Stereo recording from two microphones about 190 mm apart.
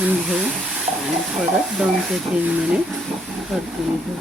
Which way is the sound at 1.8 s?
5° right (ahead or behind).